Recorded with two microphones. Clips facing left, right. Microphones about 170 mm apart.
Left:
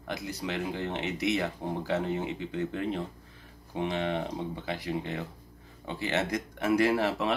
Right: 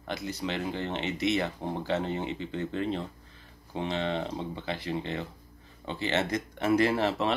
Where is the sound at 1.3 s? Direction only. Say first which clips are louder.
Right 1 dB; 20° right (ahead or behind).